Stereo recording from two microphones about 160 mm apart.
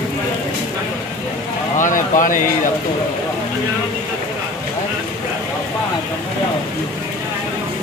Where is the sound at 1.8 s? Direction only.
55° left (ahead or behind).